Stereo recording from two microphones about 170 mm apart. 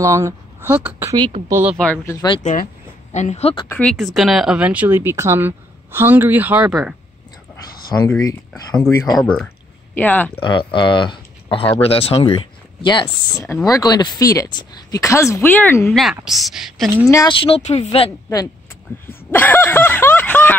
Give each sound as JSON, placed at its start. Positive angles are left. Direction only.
{"t": 0.0, "sound": "speech", "side_deg": -15}
{"t": 1.1, "sound": "a woman's voice", "side_deg": -25}
{"t": 1.8, "sound": "speech", "side_deg": 10}
{"t": 2.1, "sound": "speech", "side_deg": 25}
{"t": 2.4, "sound": "speech", "side_deg": 50}
{"t": 3.6, "sound": "speech", "side_deg": 10}
{"t": 3.9, "sound": "speech", "side_deg": 0}
{"t": 8.2, "sound": "speech", "side_deg": 20}
{"t": 9.1, "sound": "a woman's voice", "side_deg": 5}
{"t": 10.4, "sound": "speech", "side_deg": 30}
{"t": 16.0, "sound": "a woman's voice", "side_deg": 0}
{"t": 17.1, "sound": "speech", "side_deg": 25}
{"t": 19.0, "sound": "a sound", "side_deg": 10}